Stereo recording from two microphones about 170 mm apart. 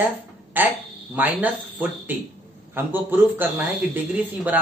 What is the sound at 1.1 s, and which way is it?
A man's voice, 10° right (ahead or behind).